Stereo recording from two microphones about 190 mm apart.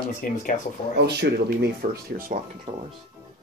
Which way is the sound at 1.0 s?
60° right (ahead or behind).